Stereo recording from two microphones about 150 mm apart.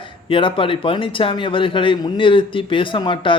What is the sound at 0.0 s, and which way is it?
A man's voice, 35° left (ahead or behind).